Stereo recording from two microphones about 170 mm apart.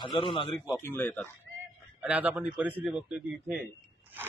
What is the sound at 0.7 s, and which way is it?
Speech, 10° left (ahead or behind).